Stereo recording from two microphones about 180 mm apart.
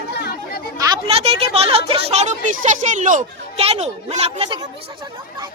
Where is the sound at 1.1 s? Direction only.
35° right (ahead or behind).